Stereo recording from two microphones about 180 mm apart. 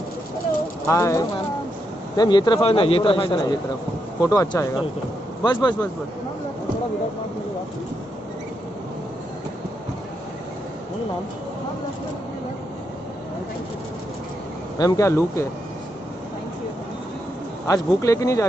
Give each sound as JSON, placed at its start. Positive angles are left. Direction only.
{"t": 0.8, "sound": "speech", "side_deg": 15}
{"t": 14.8, "sound": "speech", "side_deg": 20}
{"t": 17.6, "sound": "speech", "side_deg": 20}